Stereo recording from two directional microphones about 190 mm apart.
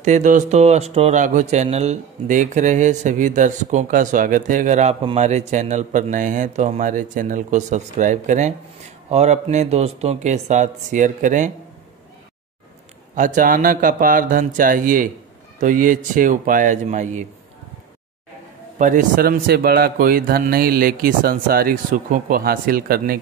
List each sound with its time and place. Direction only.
0.0 s speech: 40° right (ahead or behind)
13.1 s a man's voice: 45° right (ahead or behind)
18.8 s a man's voice: 45° right (ahead or behind)